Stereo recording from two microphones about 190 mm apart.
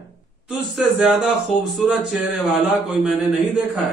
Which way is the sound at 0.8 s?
5° right (ahead or behind).